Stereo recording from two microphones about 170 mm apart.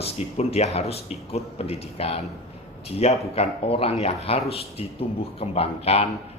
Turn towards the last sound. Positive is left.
turn(degrees=35)  # may be behind; listen again after turning